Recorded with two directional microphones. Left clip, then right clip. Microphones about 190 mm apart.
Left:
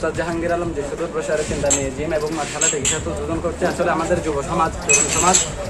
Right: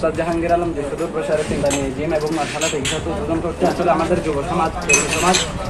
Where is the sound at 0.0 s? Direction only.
20° left (ahead or behind).